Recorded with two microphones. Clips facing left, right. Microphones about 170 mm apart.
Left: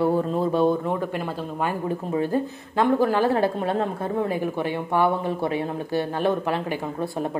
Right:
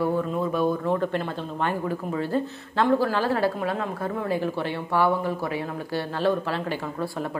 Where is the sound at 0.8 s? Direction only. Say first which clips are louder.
Right 1 dB; 10° left (ahead or behind).